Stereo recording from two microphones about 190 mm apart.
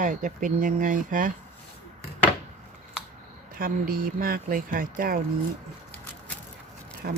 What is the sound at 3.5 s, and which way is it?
Speech, 50° right (ahead or behind).